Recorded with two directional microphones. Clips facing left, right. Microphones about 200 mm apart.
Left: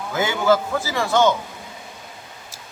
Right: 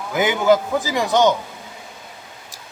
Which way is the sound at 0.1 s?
15° right (ahead or behind).